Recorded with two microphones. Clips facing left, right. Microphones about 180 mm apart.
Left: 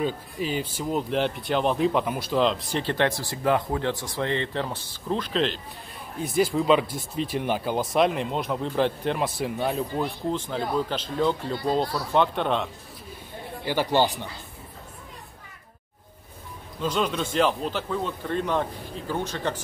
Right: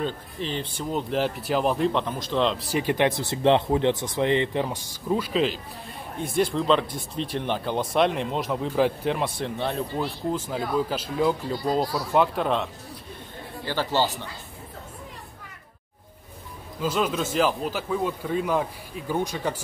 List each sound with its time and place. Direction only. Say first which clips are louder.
0.0 s speech: left 2 dB; 5° left (ahead or behind)
2.8 s speech: right 2 dB; 15° right (ahead or behind)
13.7 s speech: left 2 dB; 15° left (ahead or behind)
16.8 s speech: right 1 dB; 5° right (ahead or behind)